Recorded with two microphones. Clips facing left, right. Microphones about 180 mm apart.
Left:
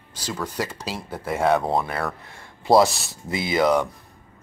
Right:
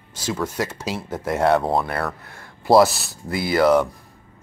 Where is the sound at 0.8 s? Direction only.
10° right (ahead or behind).